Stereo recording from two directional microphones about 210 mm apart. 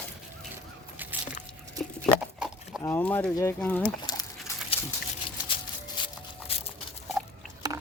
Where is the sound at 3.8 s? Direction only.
20° left (ahead or behind).